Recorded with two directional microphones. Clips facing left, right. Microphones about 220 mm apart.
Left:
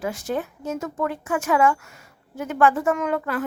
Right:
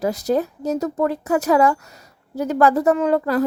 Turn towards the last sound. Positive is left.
turn(degrees=-35)  # may be behind; listen again after turning